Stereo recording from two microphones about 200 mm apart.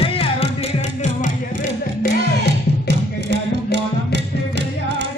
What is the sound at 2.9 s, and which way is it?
Music, 60° right (ahead or behind).